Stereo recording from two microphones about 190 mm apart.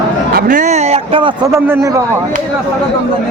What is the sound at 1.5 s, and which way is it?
Speech, 15° right (ahead or behind).